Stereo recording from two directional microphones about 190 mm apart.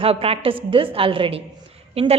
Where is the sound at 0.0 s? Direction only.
30° right (ahead or behind).